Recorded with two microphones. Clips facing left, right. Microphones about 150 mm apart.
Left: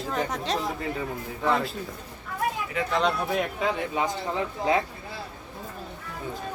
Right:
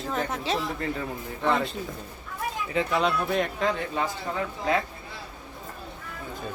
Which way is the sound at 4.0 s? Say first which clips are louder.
Left 2 dB; 20° left (ahead or behind).